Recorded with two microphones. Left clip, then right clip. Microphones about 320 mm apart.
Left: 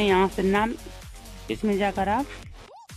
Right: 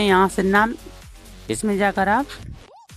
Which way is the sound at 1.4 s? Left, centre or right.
Centre.